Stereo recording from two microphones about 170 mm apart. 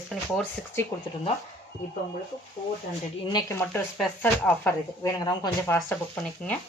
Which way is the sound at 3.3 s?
15° left (ahead or behind).